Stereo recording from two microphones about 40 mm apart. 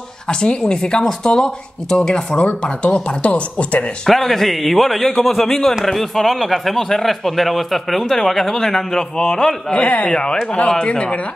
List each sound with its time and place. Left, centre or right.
0.3 s speech: left
4.1 s speech: centre
9.7 s speech: left